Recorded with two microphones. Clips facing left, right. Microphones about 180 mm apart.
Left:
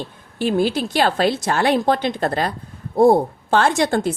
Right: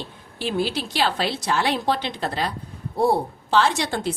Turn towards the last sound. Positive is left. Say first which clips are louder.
# left 5 dB
turn(degrees=50)  # may be behind; listen again after turning